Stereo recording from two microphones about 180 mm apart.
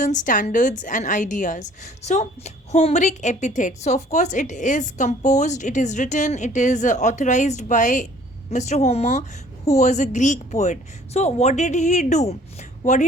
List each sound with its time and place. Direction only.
0.0 s a woman's voice: 45° left (ahead or behind)